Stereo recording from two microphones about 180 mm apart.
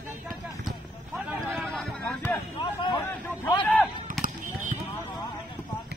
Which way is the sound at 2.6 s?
30° left (ahead or behind).